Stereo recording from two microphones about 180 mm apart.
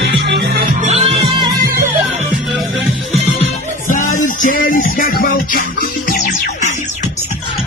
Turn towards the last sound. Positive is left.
turn(degrees=45)  # may be behind; listen again after turning